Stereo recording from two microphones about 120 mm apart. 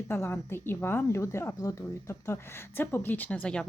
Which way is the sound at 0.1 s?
20° left (ahead or behind).